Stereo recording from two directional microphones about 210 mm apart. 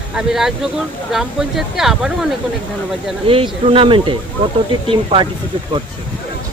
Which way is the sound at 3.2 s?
25° right (ahead or behind).